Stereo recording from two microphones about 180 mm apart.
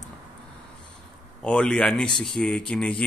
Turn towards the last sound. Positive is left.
turn(degrees=5)  # may be behind; listen again after turning